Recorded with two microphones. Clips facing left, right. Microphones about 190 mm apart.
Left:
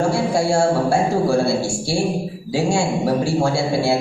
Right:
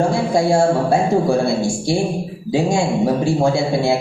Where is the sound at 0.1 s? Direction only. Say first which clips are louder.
Right 2 dB; 15° right (ahead or behind).